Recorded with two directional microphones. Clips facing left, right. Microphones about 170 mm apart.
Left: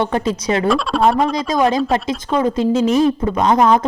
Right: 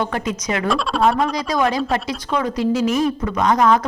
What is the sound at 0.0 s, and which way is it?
A woman's voice, 30° left (ahead or behind).